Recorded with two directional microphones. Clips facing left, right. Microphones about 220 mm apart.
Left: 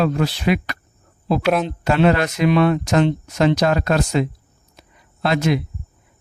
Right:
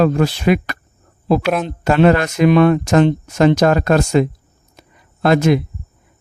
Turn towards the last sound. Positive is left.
turn(degrees=-50)  # may be behind; listen again after turning